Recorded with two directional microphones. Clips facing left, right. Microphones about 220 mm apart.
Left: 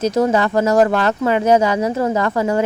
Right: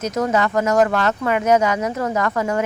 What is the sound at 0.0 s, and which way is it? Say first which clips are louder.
Speech: left 4 dB; 30° left (ahead or behind).